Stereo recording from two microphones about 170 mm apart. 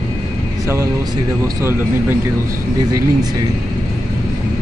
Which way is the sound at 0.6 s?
15° right (ahead or behind).